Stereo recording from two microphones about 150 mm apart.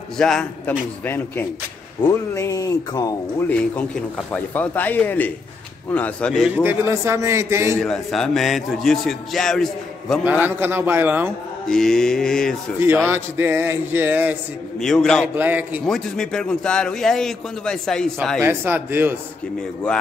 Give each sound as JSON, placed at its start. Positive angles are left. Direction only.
{"t": 0.2, "sound": "a man's voice", "side_deg": 5}
{"t": 3.4, "sound": "a man's voice", "side_deg": 10}
{"t": 6.5, "sound": "speech", "side_deg": -15}
{"t": 7.8, "sound": "a man's voice", "side_deg": 5}
{"t": 10.2, "sound": "speech", "side_deg": -10}
{"t": 11.6, "sound": "a man's voice", "side_deg": 5}
{"t": 12.7, "sound": "speech", "side_deg": -15}
{"t": 14.8, "sound": "a man's voice", "side_deg": 5}
{"t": 15.3, "sound": "speech", "side_deg": -10}
{"t": 15.9, "sound": "a man's voice", "side_deg": 5}
{"t": 18.4, "sound": "speech", "side_deg": -15}